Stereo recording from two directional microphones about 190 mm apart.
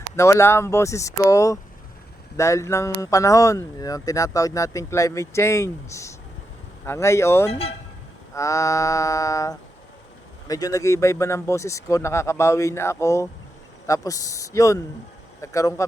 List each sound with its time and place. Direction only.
0.2 s speech: 15° left (ahead or behind)